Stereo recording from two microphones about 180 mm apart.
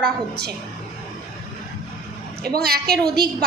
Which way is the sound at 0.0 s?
60° right (ahead or behind).